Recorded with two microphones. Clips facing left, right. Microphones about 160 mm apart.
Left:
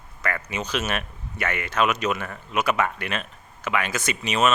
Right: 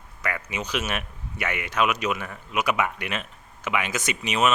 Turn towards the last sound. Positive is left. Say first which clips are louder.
# left 1 dB
turn(degrees=-15)  # may be behind; listen again after turning